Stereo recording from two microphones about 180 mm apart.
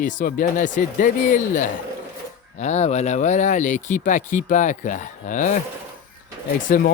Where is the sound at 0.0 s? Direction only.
45° left (ahead or behind).